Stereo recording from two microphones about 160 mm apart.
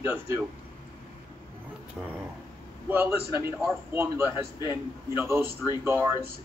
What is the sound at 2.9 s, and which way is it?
Speech, 10° right (ahead or behind).